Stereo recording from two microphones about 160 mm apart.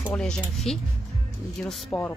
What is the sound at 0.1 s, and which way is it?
Speech, 5° left (ahead or behind).